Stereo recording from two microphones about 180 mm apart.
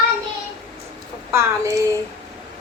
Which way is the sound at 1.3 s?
15° right (ahead or behind).